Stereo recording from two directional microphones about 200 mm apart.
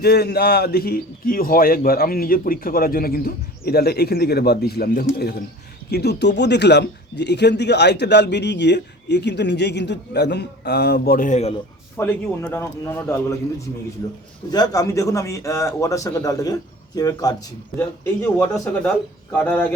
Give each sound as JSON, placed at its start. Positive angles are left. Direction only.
{"t": 0.0, "sound": "a man's voice", "side_deg": 50}
{"t": 11.9, "sound": "a man's voice", "side_deg": 10}